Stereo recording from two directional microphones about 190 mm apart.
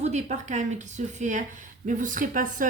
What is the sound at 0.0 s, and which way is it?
Speech, 35° right (ahead or behind).